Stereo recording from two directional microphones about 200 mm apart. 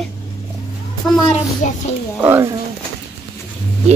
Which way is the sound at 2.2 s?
10° right (ahead or behind).